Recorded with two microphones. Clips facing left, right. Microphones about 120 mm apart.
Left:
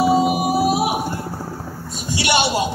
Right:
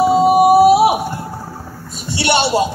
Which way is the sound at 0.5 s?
65° right (ahead or behind).